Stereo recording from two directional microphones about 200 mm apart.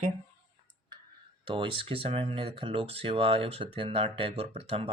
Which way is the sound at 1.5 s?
25° right (ahead or behind).